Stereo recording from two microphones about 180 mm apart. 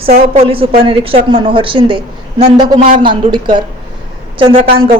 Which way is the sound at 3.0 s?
25° right (ahead or behind).